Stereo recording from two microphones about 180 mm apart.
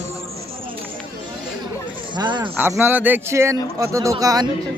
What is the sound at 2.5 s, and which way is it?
A man's voice, 10° right (ahead or behind).